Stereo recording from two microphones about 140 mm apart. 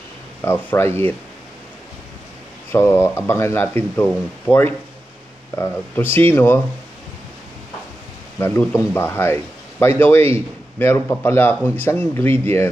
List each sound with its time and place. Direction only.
0.4 s a man's voice: 15° left (ahead or behind)
2.7 s a man's voice: 20° left (ahead or behind)
8.4 s a man's voice: 10° left (ahead or behind)